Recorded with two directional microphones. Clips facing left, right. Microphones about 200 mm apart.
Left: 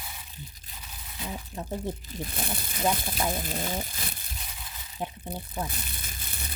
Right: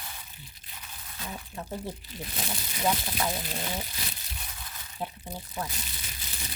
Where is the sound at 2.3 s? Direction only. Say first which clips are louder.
Right 1 dB; 55° left (ahead or behind).